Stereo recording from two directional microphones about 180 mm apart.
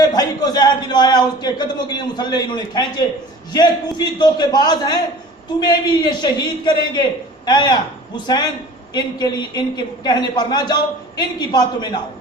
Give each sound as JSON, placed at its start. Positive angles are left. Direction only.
{"t": 0.0, "sound": "a man's voice", "side_deg": 20}